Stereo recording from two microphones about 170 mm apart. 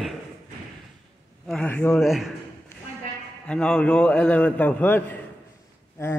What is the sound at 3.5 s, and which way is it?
A man's voice, 5° left (ahead or behind).